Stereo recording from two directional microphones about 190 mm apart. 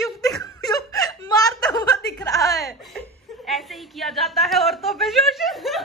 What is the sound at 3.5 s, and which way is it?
A woman's voice, centre (ahead or behind).